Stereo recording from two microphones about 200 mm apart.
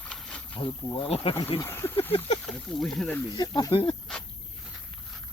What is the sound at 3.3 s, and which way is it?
Speech, 20° left (ahead or behind).